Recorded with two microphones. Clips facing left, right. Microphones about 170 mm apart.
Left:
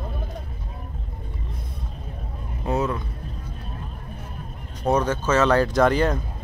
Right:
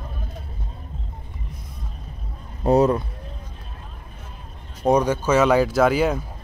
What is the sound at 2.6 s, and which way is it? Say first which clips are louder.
Speech: right 8 dB; 35° right (ahead or behind).